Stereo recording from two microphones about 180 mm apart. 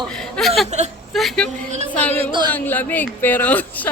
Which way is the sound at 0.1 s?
5° left (ahead or behind).